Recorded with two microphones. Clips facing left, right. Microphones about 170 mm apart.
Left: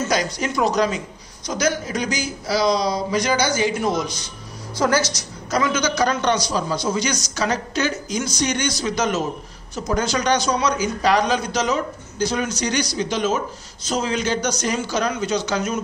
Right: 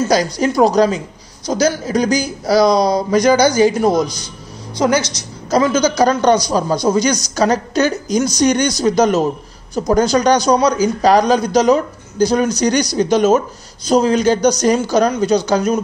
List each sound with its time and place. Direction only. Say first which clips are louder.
0.0 s speech: right 7 dB; 35° right (ahead or behind)
4.7 s a woman's voice: right 4 dB; 20° right (ahead or behind)
5.5 s speech: right 7 dB; 35° right (ahead or behind)